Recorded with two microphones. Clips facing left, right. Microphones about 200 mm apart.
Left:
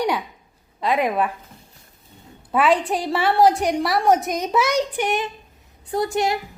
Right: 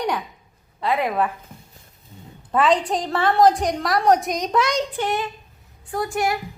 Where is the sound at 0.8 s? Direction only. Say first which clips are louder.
Left 1 dB; 15° left (ahead or behind).